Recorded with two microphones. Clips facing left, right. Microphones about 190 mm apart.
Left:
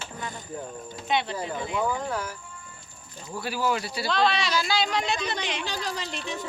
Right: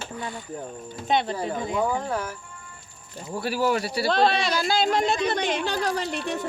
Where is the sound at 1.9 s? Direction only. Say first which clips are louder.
Right 2 dB; 30° right (ahead or behind).